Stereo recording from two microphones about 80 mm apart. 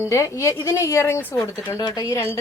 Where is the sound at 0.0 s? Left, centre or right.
Left.